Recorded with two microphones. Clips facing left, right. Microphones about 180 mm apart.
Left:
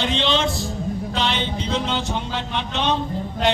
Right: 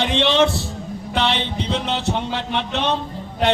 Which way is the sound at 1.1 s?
70° right (ahead or behind).